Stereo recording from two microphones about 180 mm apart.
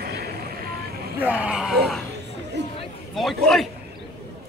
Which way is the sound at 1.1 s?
10° right (ahead or behind).